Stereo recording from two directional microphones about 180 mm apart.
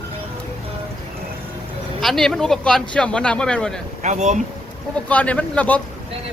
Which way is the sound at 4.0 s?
40° right (ahead or behind).